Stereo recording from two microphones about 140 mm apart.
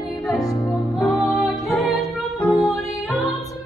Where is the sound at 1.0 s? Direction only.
5° right (ahead or behind).